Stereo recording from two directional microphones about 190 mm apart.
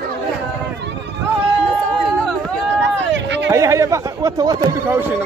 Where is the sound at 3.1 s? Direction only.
70° right (ahead or behind).